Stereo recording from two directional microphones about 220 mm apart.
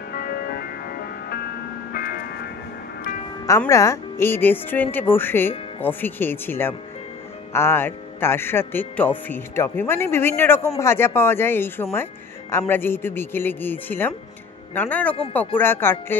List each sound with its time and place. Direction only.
0.1 s music: 45° left (ahead or behind)
1.9 s music: 40° left (ahead or behind)
3.4 s speech: 15° left (ahead or behind)